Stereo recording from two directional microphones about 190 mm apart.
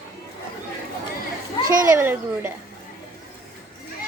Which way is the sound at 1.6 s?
45° right (ahead or behind).